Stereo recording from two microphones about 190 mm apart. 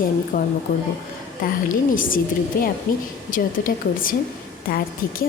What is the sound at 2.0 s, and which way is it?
A woman's voice, 45° left (ahead or behind).